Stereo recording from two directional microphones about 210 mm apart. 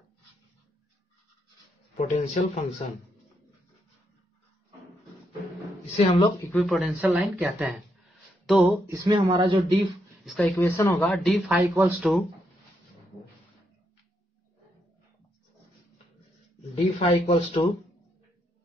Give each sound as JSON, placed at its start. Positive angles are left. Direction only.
{"t": 2.0, "sound": "speech", "side_deg": 35}
{"t": 5.9, "sound": "speech", "side_deg": 25}
{"t": 6.5, "sound": "speech", "side_deg": 0}
{"t": 8.8, "sound": "speech", "side_deg": -15}
{"t": 9.3, "sound": "speech", "side_deg": -25}
{"t": 10.2, "sound": "speech", "side_deg": 0}
{"t": 10.6, "sound": "a man's voice", "side_deg": 10}
{"t": 11.7, "sound": "speech", "side_deg": -10}
{"t": 17.0, "sound": "speech", "side_deg": 25}